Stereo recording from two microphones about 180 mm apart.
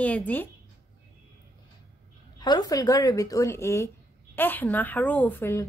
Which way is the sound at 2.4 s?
20° left (ahead or behind).